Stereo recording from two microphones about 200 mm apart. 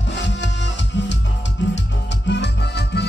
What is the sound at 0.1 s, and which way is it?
Music, 60° left (ahead or behind).